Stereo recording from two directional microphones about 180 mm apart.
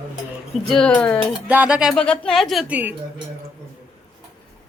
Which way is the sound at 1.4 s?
10° right (ahead or behind).